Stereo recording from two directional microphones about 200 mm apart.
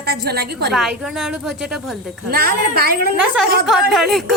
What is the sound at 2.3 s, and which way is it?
Speech, 50° right (ahead or behind).